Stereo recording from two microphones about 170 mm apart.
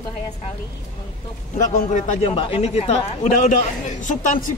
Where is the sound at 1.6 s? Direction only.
45° left (ahead or behind).